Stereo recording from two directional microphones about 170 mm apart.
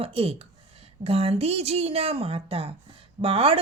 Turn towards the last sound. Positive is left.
turn(degrees=-35)  # may be behind; listen again after turning